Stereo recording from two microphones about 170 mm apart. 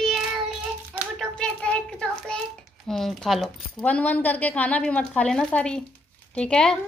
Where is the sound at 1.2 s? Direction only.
5° left (ahead or behind).